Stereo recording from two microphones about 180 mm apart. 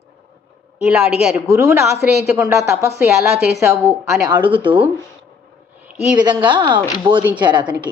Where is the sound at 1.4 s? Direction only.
15° right (ahead or behind).